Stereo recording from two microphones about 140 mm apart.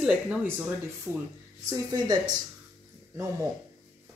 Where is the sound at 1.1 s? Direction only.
20° right (ahead or behind).